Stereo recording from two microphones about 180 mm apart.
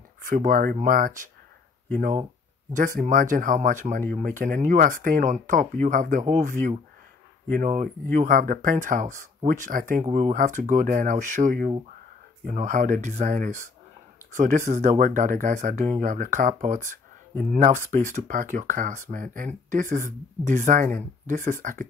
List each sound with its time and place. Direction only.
0.2 s speech: 50° right (ahead or behind)
2.7 s speech: 45° right (ahead or behind)
7.5 s speech: 45° right (ahead or behind)